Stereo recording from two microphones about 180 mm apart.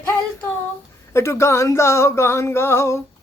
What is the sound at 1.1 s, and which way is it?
Speech, 15° left (ahead or behind).